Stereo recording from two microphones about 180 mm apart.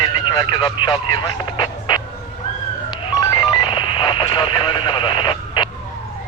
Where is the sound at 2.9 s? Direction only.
25° left (ahead or behind).